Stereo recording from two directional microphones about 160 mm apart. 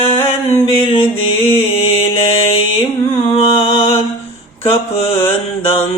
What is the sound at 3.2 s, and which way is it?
Music, 40° left (ahead or behind).